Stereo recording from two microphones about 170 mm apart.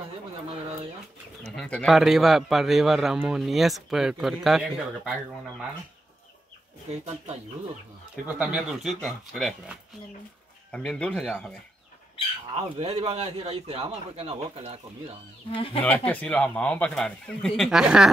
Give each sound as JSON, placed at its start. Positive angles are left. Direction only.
{"t": 1.6, "sound": "a man's voice", "side_deg": 5}
{"t": 8.3, "sound": "a man's voice", "side_deg": -5}
{"t": 12.5, "sound": "a man's voice", "side_deg": -35}
{"t": 15.5, "sound": "speech", "side_deg": 35}
{"t": 16.1, "sound": "a man's voice", "side_deg": 10}